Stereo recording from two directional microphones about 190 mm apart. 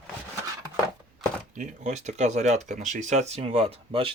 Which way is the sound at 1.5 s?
40° right (ahead or behind).